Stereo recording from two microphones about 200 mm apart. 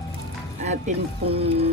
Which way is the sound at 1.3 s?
30° right (ahead or behind).